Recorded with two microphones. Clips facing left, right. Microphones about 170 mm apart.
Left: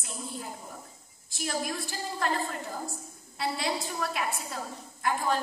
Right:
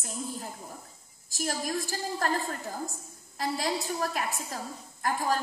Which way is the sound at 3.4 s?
45° right (ahead or behind).